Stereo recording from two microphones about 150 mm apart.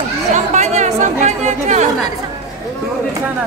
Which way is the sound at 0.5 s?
50° right (ahead or behind).